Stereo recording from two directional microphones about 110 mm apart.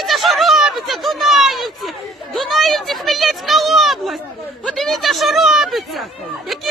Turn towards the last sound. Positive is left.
turn(degrees=0)  # may be behind; listen again after turning